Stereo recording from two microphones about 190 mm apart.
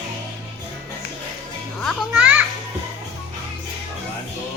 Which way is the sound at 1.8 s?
Centre (ahead or behind).